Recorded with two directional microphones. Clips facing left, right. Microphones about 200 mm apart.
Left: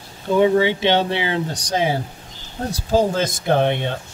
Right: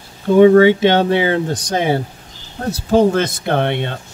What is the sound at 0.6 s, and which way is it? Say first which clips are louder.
Speech: right 7 dB; 50° right (ahead or behind).